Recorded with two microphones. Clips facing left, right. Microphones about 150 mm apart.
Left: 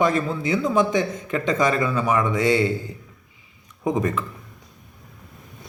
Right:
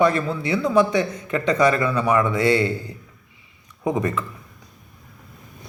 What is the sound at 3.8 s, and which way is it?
Speech, 20° left (ahead or behind).